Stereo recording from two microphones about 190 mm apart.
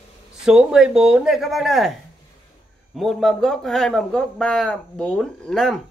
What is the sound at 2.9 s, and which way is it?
Speech, centre (ahead or behind).